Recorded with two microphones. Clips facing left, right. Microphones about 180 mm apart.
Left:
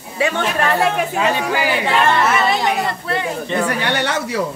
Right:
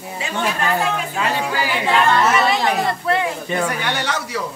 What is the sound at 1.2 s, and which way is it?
Speech, 15° left (ahead or behind).